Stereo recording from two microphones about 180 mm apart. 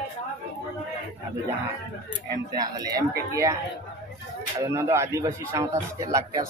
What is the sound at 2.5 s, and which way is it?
Speech, 20° right (ahead or behind).